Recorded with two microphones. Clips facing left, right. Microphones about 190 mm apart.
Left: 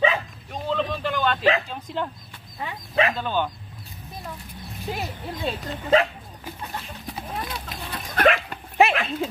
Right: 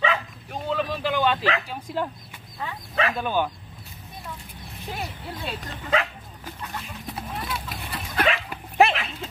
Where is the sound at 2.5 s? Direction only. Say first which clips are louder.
Left 4 dB; 20° left (ahead or behind).